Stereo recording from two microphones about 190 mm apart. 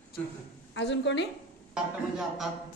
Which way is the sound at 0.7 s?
65° left (ahead or behind).